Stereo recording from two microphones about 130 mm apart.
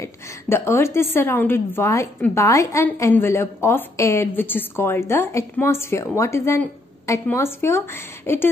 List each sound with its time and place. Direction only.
0.0 s a woman's voice: 20° left (ahead or behind)